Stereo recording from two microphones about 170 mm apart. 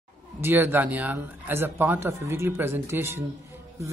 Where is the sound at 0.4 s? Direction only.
15° right (ahead or behind).